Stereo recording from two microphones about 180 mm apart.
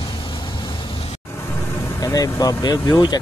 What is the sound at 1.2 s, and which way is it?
Vehicle, 15° left (ahead or behind).